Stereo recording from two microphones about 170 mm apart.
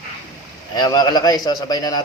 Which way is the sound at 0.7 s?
25° left (ahead or behind).